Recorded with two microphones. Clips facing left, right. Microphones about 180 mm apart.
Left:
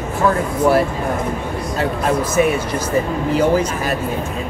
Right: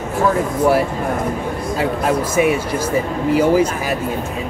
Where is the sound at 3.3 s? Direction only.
10° right (ahead or behind).